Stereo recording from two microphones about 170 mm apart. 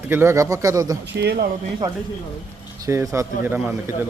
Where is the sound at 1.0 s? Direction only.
85° right.